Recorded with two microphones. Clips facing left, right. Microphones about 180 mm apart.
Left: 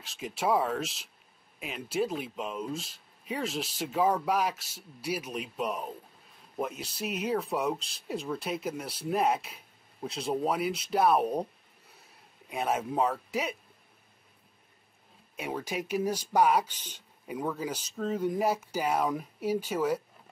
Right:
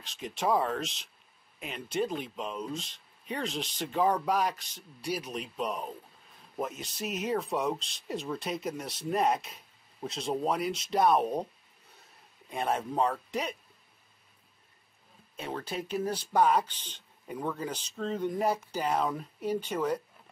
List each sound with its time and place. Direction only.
0.0 s speech: 5° left (ahead or behind)
12.4 s speech: 5° left (ahead or behind)
15.3 s speech: 10° left (ahead or behind)